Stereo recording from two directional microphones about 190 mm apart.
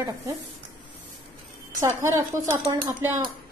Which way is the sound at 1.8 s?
15° right (ahead or behind).